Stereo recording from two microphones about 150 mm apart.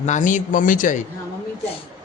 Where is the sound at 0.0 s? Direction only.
55° left (ahead or behind).